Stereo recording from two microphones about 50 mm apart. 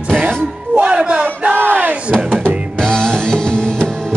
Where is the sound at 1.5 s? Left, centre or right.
Right.